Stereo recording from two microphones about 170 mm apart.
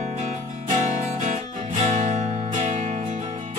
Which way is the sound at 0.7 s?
45° right (ahead or behind).